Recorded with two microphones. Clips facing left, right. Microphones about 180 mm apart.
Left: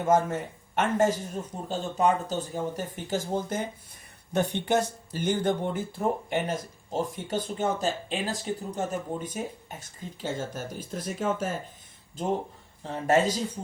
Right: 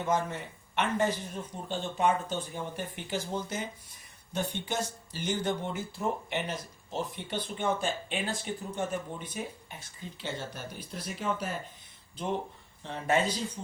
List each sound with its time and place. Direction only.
0.0 s speech: 45° left (ahead or behind)
4.4 s speech: 60° left (ahead or behind); by 13.4 s 45° left (ahead or behind)